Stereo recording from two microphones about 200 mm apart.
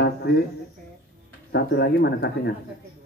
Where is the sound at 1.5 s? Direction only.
55° left (ahead or behind).